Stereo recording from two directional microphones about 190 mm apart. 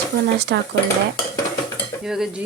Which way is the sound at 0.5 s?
65° right (ahead or behind).